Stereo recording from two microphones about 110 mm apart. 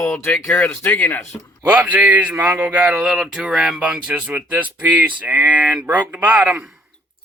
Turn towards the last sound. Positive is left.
turn(degrees=-10)  # may be behind; listen again after turning